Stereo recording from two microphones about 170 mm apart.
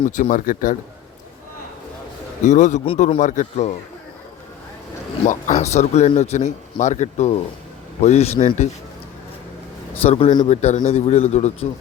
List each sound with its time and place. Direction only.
0.0 s a man's voice: 50° left (ahead or behind)
2.4 s a man's voice: 45° left (ahead or behind)
5.2 s a man's voice: 45° left (ahead or behind)
10.0 s a man's voice: 35° left (ahead or behind)